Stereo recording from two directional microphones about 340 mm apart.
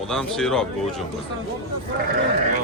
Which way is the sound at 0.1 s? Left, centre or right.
Centre.